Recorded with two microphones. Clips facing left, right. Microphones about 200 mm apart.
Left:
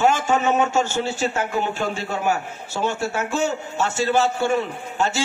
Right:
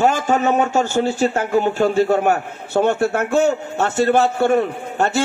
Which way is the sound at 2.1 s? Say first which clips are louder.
Right 6 dB; 60° right (ahead or behind).